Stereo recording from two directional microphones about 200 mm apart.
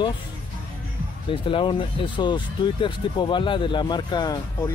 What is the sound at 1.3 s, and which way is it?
Speech, 25° left (ahead or behind).